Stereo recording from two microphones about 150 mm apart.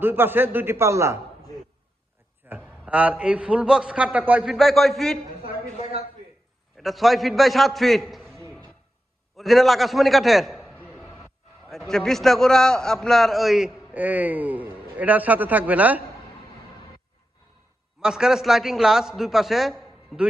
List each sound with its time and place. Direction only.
0.0 s a man's voice: 15° right (ahead or behind)
2.5 s a man's voice: 10° right (ahead or behind)
6.7 s a man's voice: centre (ahead or behind)
10.8 s a sound: centre (ahead or behind)
11.7 s a man's voice: centre (ahead or behind)
18.0 s a man's voice: 5° right (ahead or behind)